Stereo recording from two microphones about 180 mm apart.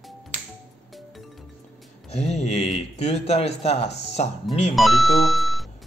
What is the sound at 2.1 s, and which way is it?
Speech, 35° left (ahead or behind).